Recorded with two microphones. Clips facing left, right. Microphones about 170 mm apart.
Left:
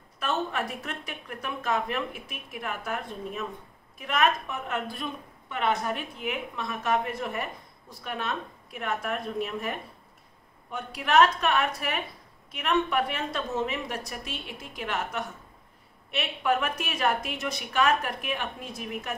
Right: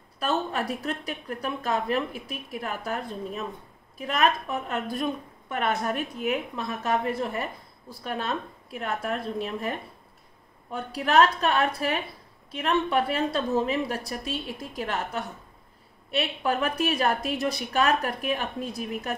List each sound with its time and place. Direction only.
0.2 s a woman's voice: 35° right (ahead or behind)